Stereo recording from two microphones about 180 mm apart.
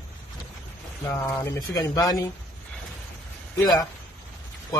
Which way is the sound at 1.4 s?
15° left (ahead or behind).